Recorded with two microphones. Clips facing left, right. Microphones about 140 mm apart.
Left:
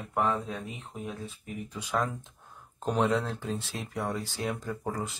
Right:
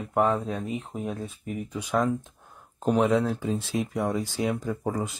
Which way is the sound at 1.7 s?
15° right (ahead or behind).